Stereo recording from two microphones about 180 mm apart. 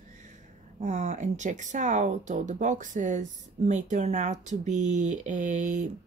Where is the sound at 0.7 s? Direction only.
40° right (ahead or behind).